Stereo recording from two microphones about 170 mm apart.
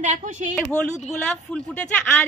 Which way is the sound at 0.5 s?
5° left (ahead or behind).